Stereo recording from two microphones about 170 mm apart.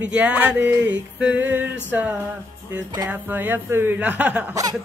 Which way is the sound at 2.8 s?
25° right (ahead or behind).